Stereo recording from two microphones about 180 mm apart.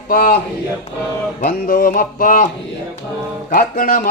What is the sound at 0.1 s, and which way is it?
Speech, 55° left (ahead or behind).